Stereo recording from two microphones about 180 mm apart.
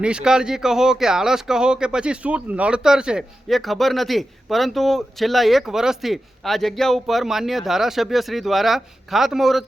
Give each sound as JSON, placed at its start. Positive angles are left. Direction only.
{"t": 0.0, "sound": "speech", "side_deg": -5}